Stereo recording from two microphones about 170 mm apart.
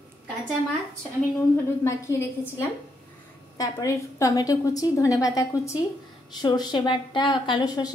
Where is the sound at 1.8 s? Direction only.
15° left (ahead or behind).